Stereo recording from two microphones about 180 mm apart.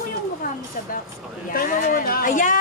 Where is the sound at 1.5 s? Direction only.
50° left (ahead or behind).